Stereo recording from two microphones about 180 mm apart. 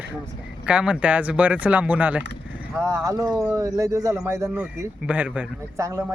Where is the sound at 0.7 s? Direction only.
5° right (ahead or behind).